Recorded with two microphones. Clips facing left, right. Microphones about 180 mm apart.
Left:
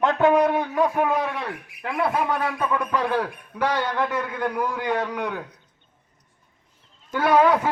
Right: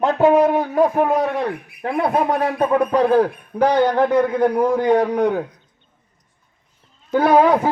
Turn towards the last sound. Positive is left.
turn(degrees=-40)  # may be behind; listen again after turning